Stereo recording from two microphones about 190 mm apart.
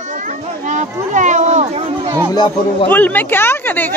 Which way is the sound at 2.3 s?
20° left (ahead or behind).